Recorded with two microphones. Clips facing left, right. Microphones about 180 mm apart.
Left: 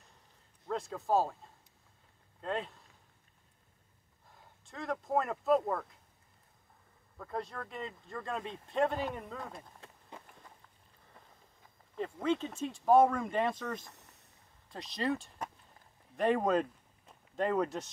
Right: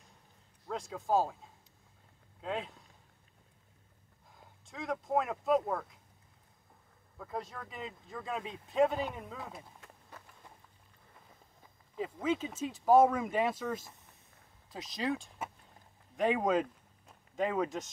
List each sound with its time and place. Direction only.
0.7 s speech: centre (ahead or behind)
4.3 s speech: centre (ahead or behind)
7.2 s speech: centre (ahead or behind)
9.8 s run: 20° left (ahead or behind)
11.9 s speech: 5° right (ahead or behind)
13.9 s a sound: 75° left (ahead or behind)
14.7 s speech: centre (ahead or behind)